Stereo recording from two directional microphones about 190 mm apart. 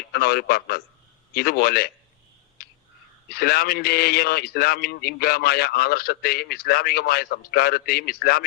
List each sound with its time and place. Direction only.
0.1 s a man's voice: 55° left (ahead or behind)
2.6 s a sound: 50° left (ahead or behind)
3.2 s a man's voice: 55° left (ahead or behind)